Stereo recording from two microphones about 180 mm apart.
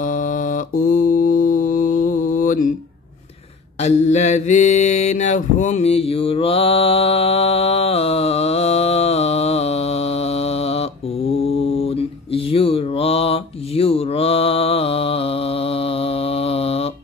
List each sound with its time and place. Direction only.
0.0 s mantra: 45° left (ahead or behind)
3.8 s mantra: 40° left (ahead or behind)